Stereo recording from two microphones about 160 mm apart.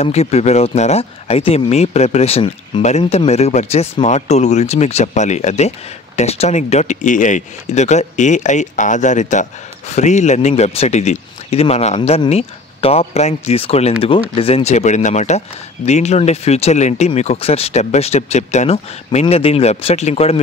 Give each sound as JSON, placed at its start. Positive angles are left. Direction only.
{"t": 0.0, "sound": "speech", "side_deg": 40}